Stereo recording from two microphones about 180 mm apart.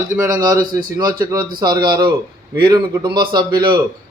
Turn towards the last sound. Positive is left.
turn(degrees=-25)  # may be behind; listen again after turning